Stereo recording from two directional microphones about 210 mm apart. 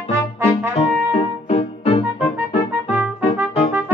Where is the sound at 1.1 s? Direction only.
30° left (ahead or behind).